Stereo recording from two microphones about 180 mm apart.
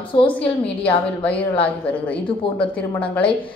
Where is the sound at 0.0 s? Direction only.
30° left (ahead or behind).